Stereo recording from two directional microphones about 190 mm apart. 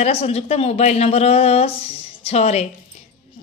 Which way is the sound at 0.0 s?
30° left (ahead or behind).